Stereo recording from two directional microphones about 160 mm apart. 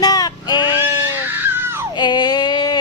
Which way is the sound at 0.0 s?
25° left (ahead or behind).